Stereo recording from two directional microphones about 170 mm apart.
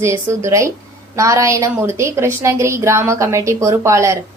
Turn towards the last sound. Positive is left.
turn(degrees=-15)  # may be behind; listen again after turning